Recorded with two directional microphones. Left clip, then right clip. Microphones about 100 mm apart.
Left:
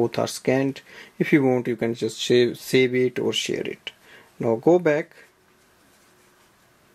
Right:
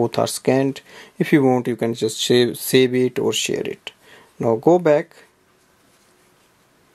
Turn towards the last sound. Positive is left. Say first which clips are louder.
# right 4 dB
turn(degrees=-40)  # may be behind; listen again after turning